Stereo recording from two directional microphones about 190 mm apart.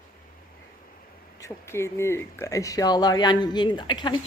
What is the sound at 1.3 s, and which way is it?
Speech, 15° left (ahead or behind).